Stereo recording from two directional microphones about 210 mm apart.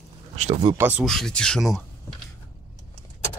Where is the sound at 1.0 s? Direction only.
Centre (ahead or behind).